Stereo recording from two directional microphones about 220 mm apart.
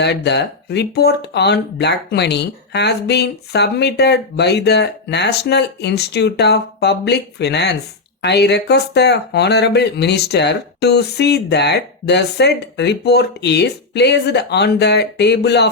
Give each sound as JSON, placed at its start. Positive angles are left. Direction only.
{"t": 0.0, "sound": "speech", "side_deg": 50}